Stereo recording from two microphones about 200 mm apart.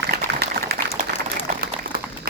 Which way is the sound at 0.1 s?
50° right (ahead or behind).